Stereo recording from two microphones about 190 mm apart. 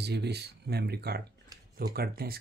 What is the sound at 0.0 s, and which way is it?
Speech, 60° right (ahead or behind).